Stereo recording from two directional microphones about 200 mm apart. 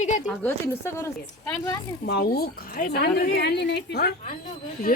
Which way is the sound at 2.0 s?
50° left (ahead or behind).